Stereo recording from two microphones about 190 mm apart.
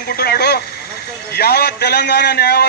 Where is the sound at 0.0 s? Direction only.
55° left (ahead or behind).